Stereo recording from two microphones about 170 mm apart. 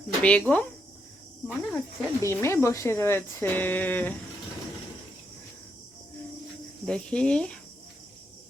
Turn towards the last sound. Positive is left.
turn(degrees=5)  # may be behind; listen again after turning